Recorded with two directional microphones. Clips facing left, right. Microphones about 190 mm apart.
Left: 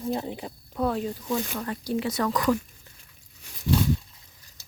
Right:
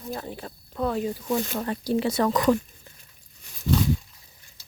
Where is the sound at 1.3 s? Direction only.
25° right (ahead or behind).